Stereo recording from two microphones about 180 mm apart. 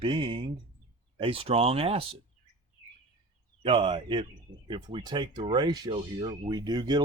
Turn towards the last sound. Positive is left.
turn(degrees=-25)  # may be behind; listen again after turning